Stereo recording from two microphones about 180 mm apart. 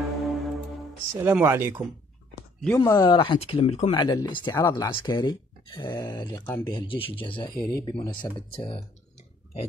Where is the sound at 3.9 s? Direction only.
20° left (ahead or behind).